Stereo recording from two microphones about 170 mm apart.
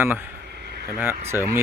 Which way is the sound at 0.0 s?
15° right (ahead or behind).